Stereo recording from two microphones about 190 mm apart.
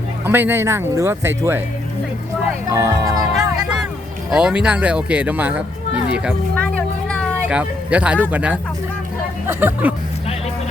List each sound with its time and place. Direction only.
0.3 s speech: 10° right (ahead or behind)
2.6 s speech: 15° right (ahead or behind)
4.3 s speech: 5° right (ahead or behind)
6.6 s music: 5° left (ahead or behind)
7.5 s speech: 5° right (ahead or behind)